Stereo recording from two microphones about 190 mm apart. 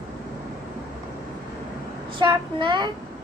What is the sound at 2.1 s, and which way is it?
Speech, 25° right (ahead or behind).